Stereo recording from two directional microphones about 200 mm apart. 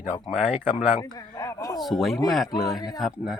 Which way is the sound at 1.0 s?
15° left (ahead or behind).